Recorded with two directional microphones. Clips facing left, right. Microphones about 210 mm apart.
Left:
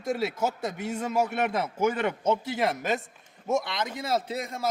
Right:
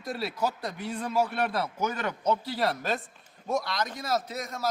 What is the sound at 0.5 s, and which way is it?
Speech, 45° left (ahead or behind).